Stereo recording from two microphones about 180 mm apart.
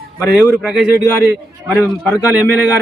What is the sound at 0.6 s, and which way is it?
A man's voice, 5° right (ahead or behind).